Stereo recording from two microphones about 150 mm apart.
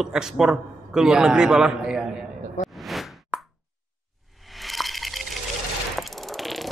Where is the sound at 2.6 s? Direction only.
55° left (ahead or behind).